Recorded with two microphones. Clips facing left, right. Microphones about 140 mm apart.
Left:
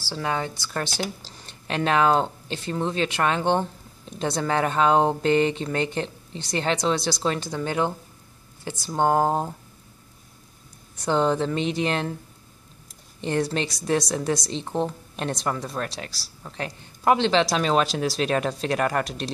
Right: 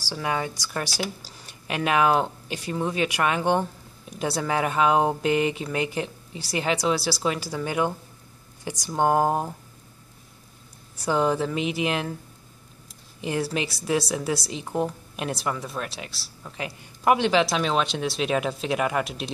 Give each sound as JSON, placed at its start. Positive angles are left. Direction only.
{"t": 0.0, "sound": "speech", "side_deg": -15}
{"t": 11.1, "sound": "speech", "side_deg": -10}
{"t": 13.2, "sound": "speech", "side_deg": -5}